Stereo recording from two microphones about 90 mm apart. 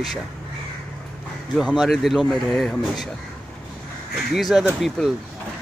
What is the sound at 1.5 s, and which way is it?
Speech, centre (ahead or behind).